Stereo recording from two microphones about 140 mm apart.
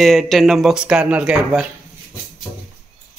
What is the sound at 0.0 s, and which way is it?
Speech, centre (ahead or behind).